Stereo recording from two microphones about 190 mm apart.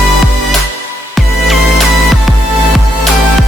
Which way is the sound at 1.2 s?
Centre (ahead or behind).